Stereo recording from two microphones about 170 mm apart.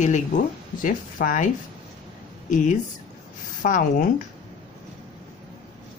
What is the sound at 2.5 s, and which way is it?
Speech, 45° left (ahead or behind).